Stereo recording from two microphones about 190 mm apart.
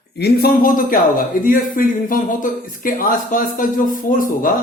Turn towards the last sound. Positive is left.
turn(degrees=45)  # may be behind; listen again after turning